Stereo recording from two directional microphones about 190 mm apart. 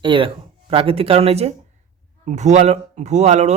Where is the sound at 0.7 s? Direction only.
30° right (ahead or behind).